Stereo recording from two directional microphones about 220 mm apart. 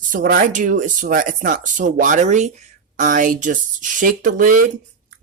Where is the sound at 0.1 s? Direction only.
40° right (ahead or behind).